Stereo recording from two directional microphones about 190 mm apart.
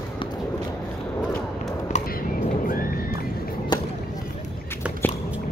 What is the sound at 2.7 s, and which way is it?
Horse, 50° left (ahead or behind).